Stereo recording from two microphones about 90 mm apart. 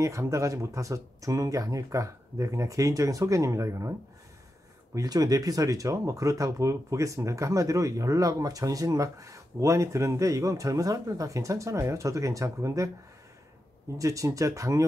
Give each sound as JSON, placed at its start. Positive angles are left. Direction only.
{"t": 0.0, "sound": "speech", "side_deg": -35}
{"t": 4.9, "sound": "speech", "side_deg": -45}
{"t": 13.9, "sound": "speech", "side_deg": -35}